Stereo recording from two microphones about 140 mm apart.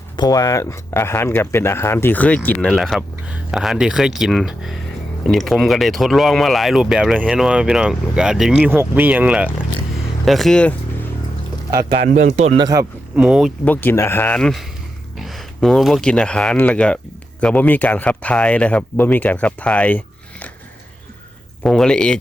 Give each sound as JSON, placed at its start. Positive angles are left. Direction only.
{"t": 0.2, "sound": "speech", "side_deg": 25}
{"t": 8.7, "sound": "speech", "side_deg": -15}
{"t": 11.7, "sound": "speech", "side_deg": -25}
{"t": 12.0, "sound": "speech", "side_deg": -60}
{"t": 12.5, "sound": "speech", "side_deg": -25}
{"t": 13.1, "sound": "speech", "side_deg": -5}
{"t": 13.7, "sound": "speech", "side_deg": 15}
{"t": 21.6, "sound": "speech", "side_deg": 5}